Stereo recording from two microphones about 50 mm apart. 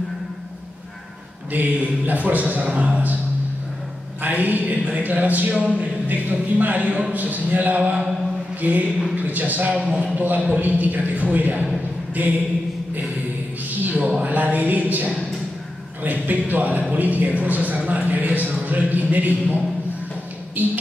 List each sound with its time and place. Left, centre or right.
1.5 s a man's voice: right
4.2 s a man's voice: right
8.5 s a sound: right
9.1 s a man's voice: right
13.8 s a sound: right
14.2 s a woman's voice: right
20.6 s a man's voice: right